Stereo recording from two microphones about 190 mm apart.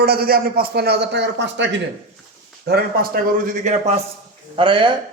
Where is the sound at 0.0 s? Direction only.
55° right (ahead or behind); by 1.8 s 70° right (ahead or behind).